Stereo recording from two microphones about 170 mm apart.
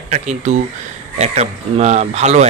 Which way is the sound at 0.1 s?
45° right (ahead or behind).